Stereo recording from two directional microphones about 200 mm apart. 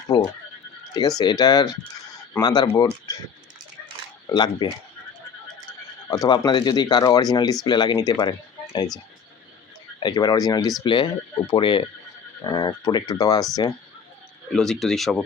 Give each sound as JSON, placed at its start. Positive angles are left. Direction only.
{"t": 0.1, "sound": "frog", "side_deg": 20}
{"t": 1.2, "sound": "speech", "side_deg": 20}
{"t": 4.3, "sound": "speech", "side_deg": 20}
{"t": 6.1, "sound": "speech", "side_deg": 20}
{"t": 10.0, "sound": "speech", "side_deg": 20}
{"t": 14.5, "sound": "speech", "side_deg": 0}